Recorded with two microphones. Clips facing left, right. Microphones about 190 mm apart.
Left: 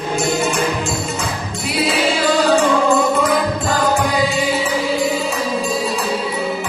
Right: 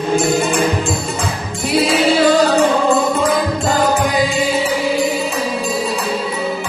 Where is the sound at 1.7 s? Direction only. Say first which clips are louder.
Right 5 dB; 40° right (ahead or behind).